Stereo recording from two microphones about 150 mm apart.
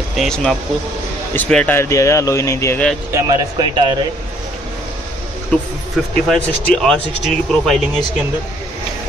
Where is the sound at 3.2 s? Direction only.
25° right (ahead or behind).